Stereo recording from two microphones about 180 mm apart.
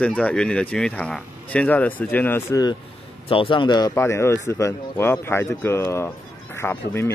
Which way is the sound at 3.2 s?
30° left (ahead or behind).